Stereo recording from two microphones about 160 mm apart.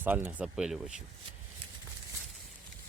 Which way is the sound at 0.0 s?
10° right (ahead or behind).